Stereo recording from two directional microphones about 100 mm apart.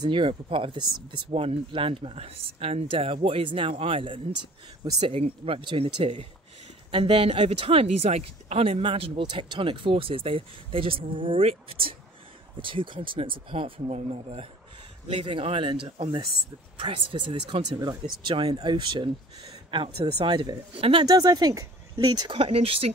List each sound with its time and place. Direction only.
0.0 s speech: 60° right (ahead or behind)
12.5 s speech: 55° right (ahead or behind); by 14.5 s 85° right
15.1 s speech: 70° right (ahead or behind)
17.8 s speech: 50° right (ahead or behind)
19.7 s speech: 65° right (ahead or behind); by 20.2 s 80° right
20.2 s speech: 45° right (ahead or behind)
20.7 s speech: 70° right (ahead or behind)
21.0 s speech: 40° right (ahead or behind)
22.3 s speech: 75° right (ahead or behind)